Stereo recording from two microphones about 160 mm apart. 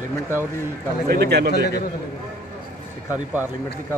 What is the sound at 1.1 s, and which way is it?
Speech, 90° right.